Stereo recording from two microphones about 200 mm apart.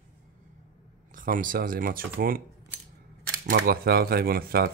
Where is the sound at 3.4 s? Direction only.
50° right (ahead or behind).